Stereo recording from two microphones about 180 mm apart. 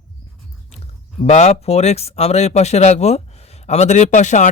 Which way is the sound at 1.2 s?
35° left (ahead or behind).